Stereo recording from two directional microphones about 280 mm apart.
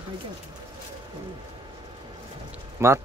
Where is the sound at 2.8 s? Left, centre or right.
Centre.